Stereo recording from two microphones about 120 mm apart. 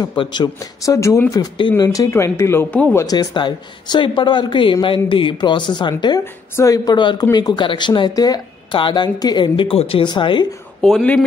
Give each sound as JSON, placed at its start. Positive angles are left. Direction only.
{"t": 0.2, "sound": "speech", "side_deg": 40}
{"t": 0.9, "sound": "speech", "side_deg": 25}
{"t": 3.0, "sound": "speech", "side_deg": 35}
{"t": 6.5, "sound": "speech", "side_deg": 30}
{"t": 10.8, "sound": "speech", "side_deg": 5}